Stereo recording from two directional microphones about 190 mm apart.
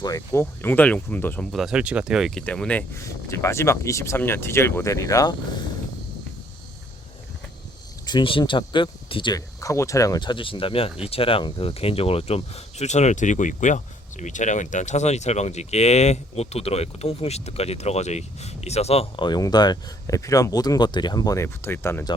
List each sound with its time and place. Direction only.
0.0 s speech: 15° left (ahead or behind)
1.5 s speech: 5° right (ahead or behind); by 5.3 s 15° left (ahead or behind)
8.0 s speech: 25° left (ahead or behind)